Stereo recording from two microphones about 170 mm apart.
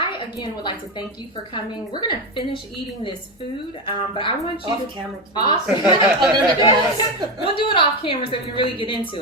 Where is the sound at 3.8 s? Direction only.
30° left (ahead or behind).